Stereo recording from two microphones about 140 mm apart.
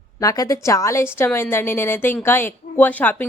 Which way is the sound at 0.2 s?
25° left (ahead or behind).